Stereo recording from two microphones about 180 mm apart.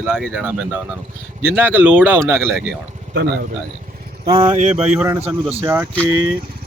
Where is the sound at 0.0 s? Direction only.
5° right (ahead or behind).